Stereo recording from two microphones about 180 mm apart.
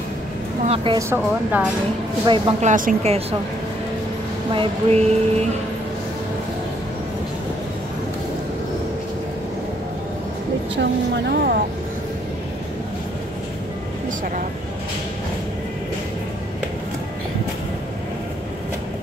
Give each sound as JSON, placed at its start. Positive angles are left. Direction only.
{"t": 0.9, "sound": "speech", "side_deg": -10}
{"t": 2.2, "sound": "speech", "side_deg": -25}
{"t": 2.6, "sound": "speech", "side_deg": -45}
{"t": 4.5, "sound": "speech", "side_deg": -30}
{"t": 10.8, "sound": "speech", "side_deg": -70}